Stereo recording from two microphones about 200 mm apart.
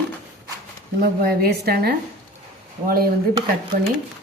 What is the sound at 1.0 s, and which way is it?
A woman's voice, 50° right (ahead or behind).